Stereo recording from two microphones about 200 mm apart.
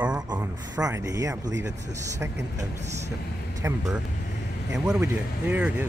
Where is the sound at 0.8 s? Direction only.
15° right (ahead or behind).